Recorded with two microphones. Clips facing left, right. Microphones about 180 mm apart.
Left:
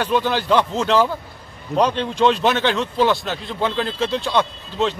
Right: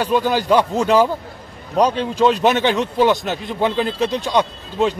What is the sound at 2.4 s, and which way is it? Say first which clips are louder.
Speech: right 3 dB; 20° right (ahead or behind).